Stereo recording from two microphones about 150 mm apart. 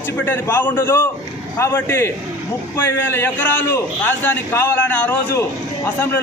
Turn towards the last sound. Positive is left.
turn(degrees=15)  # may be behind; listen again after turning